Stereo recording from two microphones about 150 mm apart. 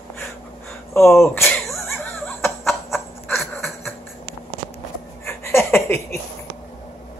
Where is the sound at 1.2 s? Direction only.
15° left (ahead or behind).